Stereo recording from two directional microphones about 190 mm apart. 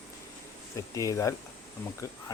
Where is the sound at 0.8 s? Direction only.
15° left (ahead or behind).